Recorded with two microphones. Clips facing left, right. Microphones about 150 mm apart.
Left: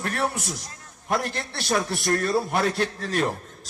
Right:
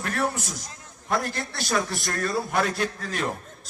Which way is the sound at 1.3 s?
60° left (ahead or behind).